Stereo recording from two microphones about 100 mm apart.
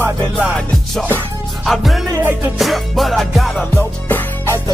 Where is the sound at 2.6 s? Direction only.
Centre (ahead or behind).